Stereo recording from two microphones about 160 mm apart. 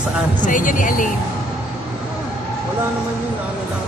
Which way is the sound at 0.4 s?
55° left (ahead or behind).